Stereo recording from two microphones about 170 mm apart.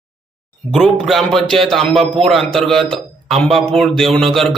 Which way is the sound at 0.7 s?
Centre (ahead or behind).